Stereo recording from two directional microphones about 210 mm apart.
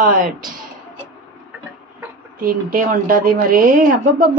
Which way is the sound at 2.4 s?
40° right (ahead or behind).